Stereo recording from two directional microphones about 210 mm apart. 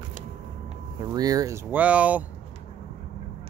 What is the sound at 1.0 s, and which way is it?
Speech, 20° right (ahead or behind).